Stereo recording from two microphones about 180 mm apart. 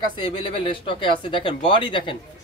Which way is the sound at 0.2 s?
30° left (ahead or behind).